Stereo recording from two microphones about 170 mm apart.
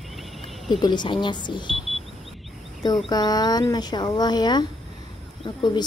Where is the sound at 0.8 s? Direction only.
25° left (ahead or behind).